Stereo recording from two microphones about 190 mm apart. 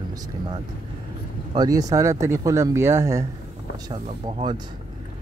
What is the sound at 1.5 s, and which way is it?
Speech, 20° right (ahead or behind).